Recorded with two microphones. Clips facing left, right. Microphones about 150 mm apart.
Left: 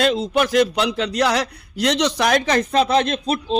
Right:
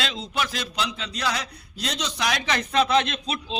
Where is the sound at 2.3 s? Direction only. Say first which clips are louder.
Left 8 dB; 45° left (ahead or behind).